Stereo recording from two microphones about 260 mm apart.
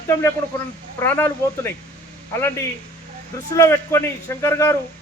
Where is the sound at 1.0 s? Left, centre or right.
Centre.